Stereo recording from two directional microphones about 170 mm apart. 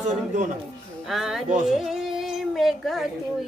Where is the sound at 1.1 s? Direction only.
Centre (ahead or behind).